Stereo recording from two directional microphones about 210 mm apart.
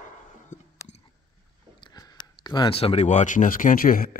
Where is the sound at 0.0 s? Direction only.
35° left (ahead or behind).